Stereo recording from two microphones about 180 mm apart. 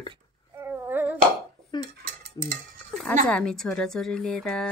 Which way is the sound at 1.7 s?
25° left (ahead or behind).